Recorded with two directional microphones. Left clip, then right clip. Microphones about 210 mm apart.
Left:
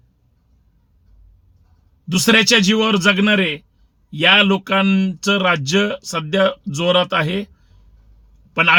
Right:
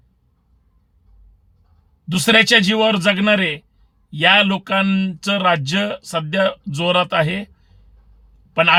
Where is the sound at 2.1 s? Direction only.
5° right (ahead or behind).